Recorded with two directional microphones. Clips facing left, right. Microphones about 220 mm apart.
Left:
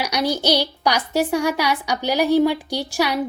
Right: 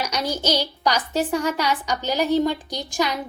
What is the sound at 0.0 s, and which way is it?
A woman's voice, 10° left (ahead or behind).